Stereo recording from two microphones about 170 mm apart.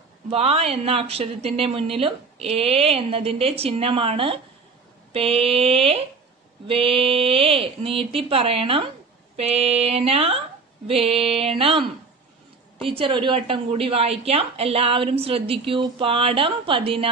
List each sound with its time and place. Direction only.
0.3 s a woman's voice: 35° right (ahead or behind)